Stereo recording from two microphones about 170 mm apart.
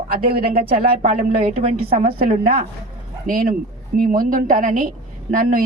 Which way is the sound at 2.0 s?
65° right (ahead or behind).